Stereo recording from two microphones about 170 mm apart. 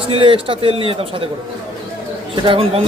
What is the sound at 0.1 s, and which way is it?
Speech, 30° right (ahead or behind).